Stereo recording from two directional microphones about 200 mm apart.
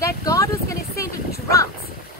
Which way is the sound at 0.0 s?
15° left (ahead or behind).